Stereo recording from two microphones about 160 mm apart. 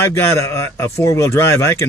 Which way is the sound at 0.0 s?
15° left (ahead or behind).